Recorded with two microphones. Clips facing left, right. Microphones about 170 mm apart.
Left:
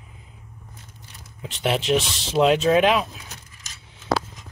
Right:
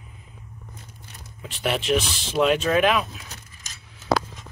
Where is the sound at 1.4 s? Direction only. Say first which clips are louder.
Left 2 dB; 25° left (ahead or behind).